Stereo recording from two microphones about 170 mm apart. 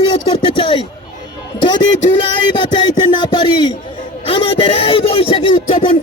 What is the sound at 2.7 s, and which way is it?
Speech, 25° left (ahead or behind).